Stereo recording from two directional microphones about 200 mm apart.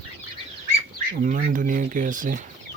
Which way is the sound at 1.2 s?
40° right (ahead or behind).